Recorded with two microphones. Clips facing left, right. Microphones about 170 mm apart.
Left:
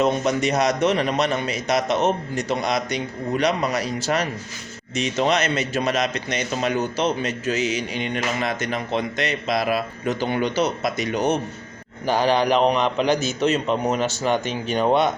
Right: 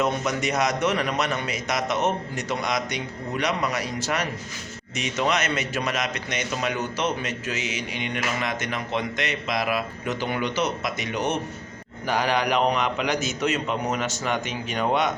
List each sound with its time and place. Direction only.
0.0 s a man's voice: 30° left (ahead or behind)